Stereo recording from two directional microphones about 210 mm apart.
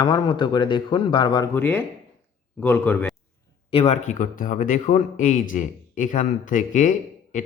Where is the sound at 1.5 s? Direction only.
10° left (ahead or behind).